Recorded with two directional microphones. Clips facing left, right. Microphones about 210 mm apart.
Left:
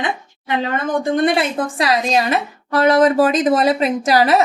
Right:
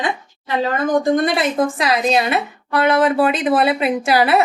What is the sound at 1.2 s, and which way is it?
A woman's voice, 30° left (ahead or behind).